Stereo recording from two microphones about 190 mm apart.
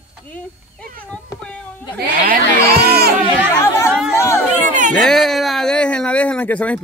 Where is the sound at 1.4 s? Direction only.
5° left (ahead or behind).